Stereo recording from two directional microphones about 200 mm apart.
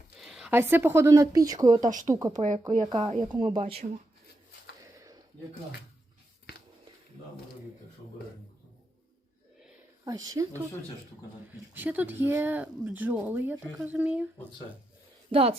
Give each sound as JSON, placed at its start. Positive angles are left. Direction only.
{"t": 0.2, "sound": "speech", "side_deg": 0}
{"t": 1.8, "sound": "speech", "side_deg": -40}
{"t": 2.1, "sound": "speech", "side_deg": -15}
{"t": 4.8, "sound": "a sound", "side_deg": -15}
{"t": 10.1, "sound": "speech", "side_deg": -20}
{"t": 11.7, "sound": "speech", "side_deg": -10}
{"t": 15.3, "sound": "speech", "side_deg": -30}